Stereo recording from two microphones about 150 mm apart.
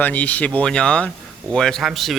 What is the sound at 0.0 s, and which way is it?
Speech, 10° left (ahead or behind).